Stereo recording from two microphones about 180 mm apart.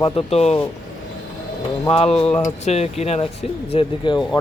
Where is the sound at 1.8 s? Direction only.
35° left (ahead or behind).